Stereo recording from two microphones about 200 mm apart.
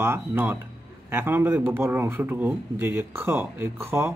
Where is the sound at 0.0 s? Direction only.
10° right (ahead or behind).